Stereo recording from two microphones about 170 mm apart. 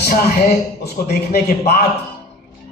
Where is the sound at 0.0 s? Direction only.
65° left (ahead or behind).